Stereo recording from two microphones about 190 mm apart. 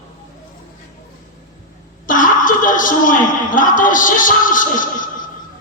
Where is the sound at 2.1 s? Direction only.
45° left (ahead or behind).